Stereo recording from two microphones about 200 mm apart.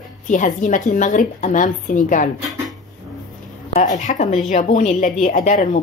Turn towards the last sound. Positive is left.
turn(degrees=40)  # may be behind; listen again after turning